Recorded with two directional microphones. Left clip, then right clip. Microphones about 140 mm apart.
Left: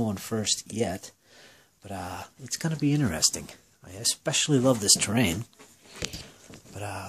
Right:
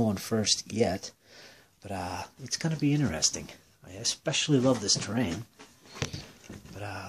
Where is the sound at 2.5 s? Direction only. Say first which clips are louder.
Left 1 dB; 25° left (ahead or behind); by 4.7 s 40° left (ahead or behind).